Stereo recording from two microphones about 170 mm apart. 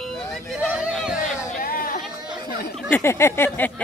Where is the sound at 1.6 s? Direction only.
55° left (ahead or behind).